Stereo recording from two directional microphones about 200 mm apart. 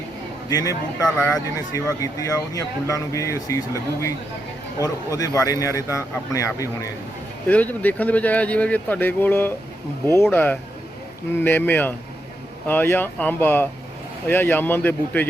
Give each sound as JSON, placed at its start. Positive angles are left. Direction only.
{"t": 0.5, "sound": "speech", "side_deg": 15}
{"t": 4.8, "sound": "speech", "side_deg": 15}